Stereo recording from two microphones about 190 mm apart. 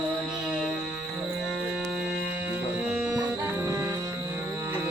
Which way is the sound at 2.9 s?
Centre (ahead or behind).